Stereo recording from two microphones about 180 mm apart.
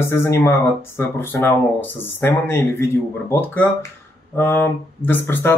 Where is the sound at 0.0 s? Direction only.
15° left (ahead or behind).